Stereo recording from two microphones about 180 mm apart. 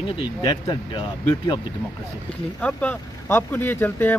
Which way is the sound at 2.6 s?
10° left (ahead or behind).